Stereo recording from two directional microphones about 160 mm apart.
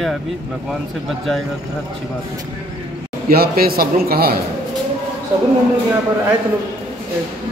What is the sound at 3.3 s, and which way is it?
A man's voice, 70° right (ahead or behind).